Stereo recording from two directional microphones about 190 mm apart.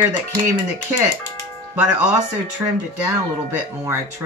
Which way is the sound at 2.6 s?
15° right (ahead or behind).